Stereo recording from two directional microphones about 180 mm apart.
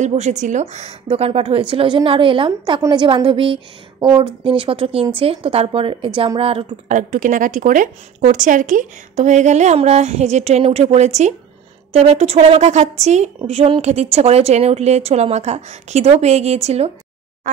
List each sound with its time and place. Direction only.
0.0 s a woman's voice: 40° right (ahead or behind)
7.0 s a woman's voice: 45° right (ahead or behind)